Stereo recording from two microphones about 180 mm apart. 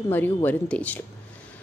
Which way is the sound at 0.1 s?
10° left (ahead or behind).